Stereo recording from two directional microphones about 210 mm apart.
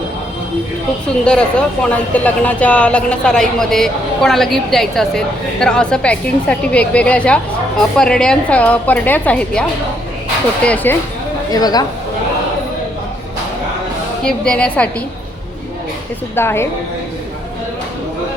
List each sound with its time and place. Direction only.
1.0 s speech: 5° left (ahead or behind)
10.8 s a woman's voice: 10° left (ahead or behind)
14.3 s speech: 5° left (ahead or behind)
16.3 s a woman's voice: 10° left (ahead or behind)